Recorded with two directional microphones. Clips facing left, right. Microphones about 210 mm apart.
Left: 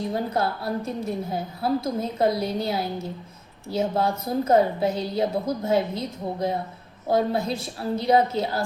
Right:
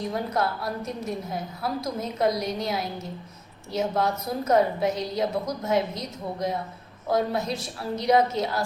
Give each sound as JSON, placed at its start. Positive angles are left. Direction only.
{"t": 0.1, "sound": "a woman's voice", "side_deg": 30}